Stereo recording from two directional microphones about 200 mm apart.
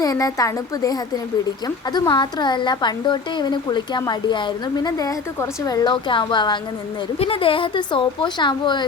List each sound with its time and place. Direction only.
0.0 s a woman's voice: 20° left (ahead or behind)